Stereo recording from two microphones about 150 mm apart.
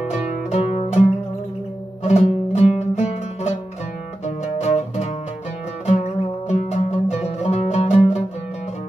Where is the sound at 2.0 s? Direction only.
45° left (ahead or behind).